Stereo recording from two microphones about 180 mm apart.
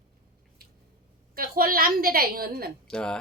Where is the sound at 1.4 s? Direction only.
55° right (ahead or behind).